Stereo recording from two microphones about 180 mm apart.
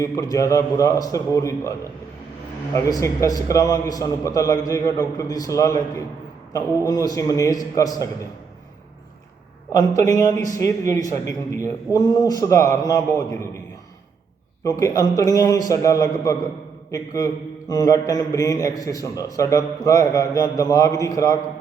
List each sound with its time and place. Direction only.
0.0 s a man's voice: 20° left (ahead or behind)
2.7 s a man's voice: 15° left (ahead or behind)
9.7 s a man's voice: 20° left (ahead or behind)
14.6 s a man's voice: 20° left (ahead or behind)